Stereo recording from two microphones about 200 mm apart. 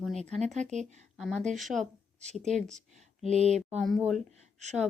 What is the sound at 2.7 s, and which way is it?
Speech, 35° right (ahead or behind).